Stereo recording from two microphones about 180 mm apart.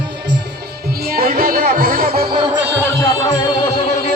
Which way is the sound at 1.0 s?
55° right (ahead or behind).